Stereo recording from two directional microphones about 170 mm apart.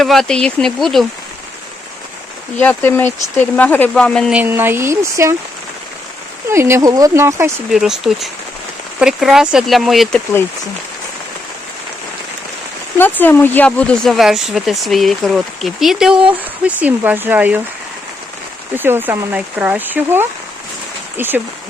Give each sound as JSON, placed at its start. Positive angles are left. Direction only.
{"t": 0.0, "sound": "speech", "side_deg": 0}
{"t": 2.6, "sound": "speech", "side_deg": 10}
{"t": 4.3, "sound": "speech", "side_deg": -10}
{"t": 6.5, "sound": "speech", "side_deg": -15}
{"t": 7.7, "sound": "speech", "side_deg": 0}
{"t": 13.0, "sound": "speech", "side_deg": 10}
{"t": 18.7, "sound": "speech", "side_deg": -10}